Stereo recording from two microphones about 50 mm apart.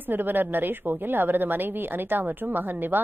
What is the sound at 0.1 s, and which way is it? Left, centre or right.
A woman's voice, right.